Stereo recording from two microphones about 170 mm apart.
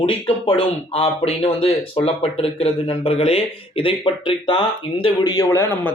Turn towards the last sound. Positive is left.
turn(degrees=25)  # may be behind; listen again after turning